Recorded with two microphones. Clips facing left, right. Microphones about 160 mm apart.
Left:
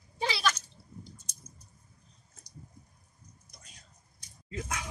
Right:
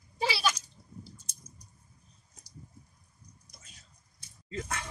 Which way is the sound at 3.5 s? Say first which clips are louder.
Left 2 dB; centre (ahead or behind).